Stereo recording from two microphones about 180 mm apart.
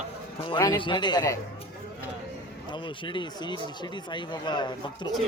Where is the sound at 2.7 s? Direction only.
25° left (ahead or behind).